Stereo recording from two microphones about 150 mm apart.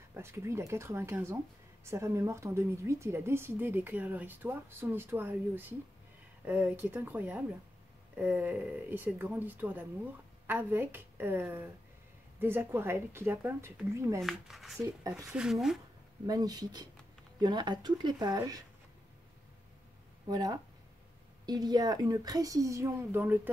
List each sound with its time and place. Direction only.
0.1 s a woman's voice: 15° right (ahead or behind)
14.2 s speech: centre (ahead or behind)
14.8 s a woman's voice: 20° right (ahead or behind)
15.2 s speech: 5° right (ahead or behind)
16.3 s a woman's voice: 25° right (ahead or behind)
20.2 s a woman's voice: 25° right (ahead or behind)